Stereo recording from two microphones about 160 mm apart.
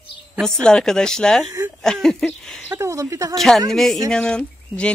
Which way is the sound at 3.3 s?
Centre (ahead or behind).